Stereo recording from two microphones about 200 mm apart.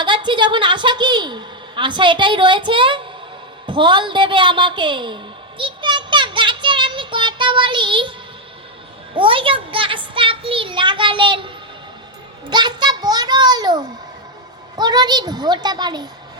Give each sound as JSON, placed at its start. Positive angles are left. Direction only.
{"t": 0.0, "sound": "a woman's voice", "side_deg": -25}
{"t": 3.7, "sound": "a sound", "side_deg": -25}
{"t": 9.1, "sound": "a woman's voice", "side_deg": -25}